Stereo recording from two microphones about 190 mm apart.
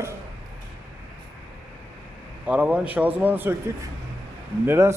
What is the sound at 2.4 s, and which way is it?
Speech, 5° right (ahead or behind).